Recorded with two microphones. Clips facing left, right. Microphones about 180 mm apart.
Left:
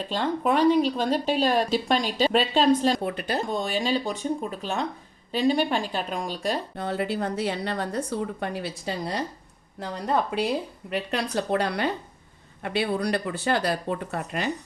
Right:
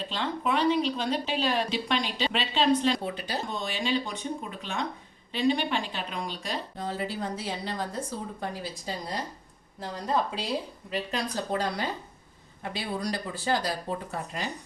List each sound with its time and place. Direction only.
0.1 s speech: 45° left (ahead or behind)
6.7 s a woman's voice: 65° left (ahead or behind)